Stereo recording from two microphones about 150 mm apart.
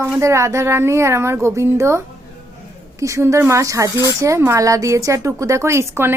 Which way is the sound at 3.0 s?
20° right (ahead or behind).